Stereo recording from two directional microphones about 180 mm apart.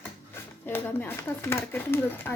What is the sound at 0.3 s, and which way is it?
Speech, 10° left (ahead or behind).